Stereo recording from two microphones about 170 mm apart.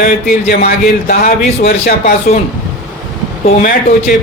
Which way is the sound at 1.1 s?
65° left (ahead or behind).